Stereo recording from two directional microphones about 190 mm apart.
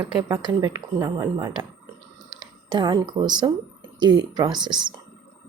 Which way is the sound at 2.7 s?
20° right (ahead or behind).